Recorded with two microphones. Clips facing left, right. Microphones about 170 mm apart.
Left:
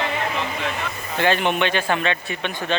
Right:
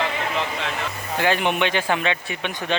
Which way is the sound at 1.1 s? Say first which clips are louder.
Left 1 dB; 10° right (ahead or behind).